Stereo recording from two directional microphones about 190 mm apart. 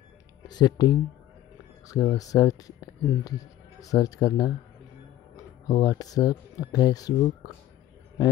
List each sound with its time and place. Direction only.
0.5 s speech: 20° left (ahead or behind)